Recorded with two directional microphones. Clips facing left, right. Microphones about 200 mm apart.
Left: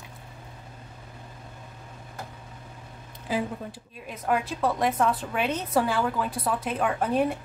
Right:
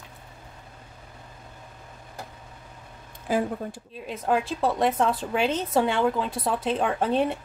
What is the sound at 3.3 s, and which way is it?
Speech, 45° right (ahead or behind).